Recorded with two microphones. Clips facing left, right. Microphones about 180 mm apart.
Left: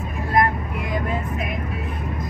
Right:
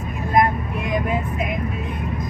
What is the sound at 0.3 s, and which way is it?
Vehicle, 20° right (ahead or behind).